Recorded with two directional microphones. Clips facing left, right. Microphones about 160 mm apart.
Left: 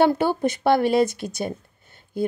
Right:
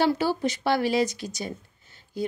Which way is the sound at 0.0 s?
55° left (ahead or behind).